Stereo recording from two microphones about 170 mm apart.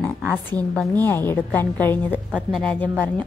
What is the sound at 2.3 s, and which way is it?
Speech, 10° right (ahead or behind).